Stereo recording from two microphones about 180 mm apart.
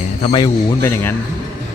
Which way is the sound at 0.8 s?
10° left (ahead or behind).